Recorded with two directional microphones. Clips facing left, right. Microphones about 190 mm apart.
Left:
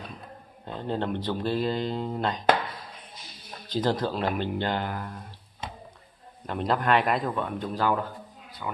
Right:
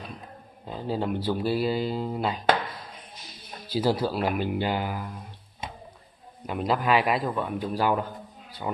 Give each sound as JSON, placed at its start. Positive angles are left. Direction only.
{"t": 0.7, "sound": "speech", "side_deg": -5}
{"t": 3.6, "sound": "a man's voice", "side_deg": -10}
{"t": 8.5, "sound": "speech", "side_deg": -30}